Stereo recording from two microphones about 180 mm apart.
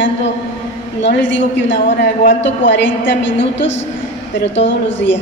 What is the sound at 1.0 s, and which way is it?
A woman's voice, 80° left.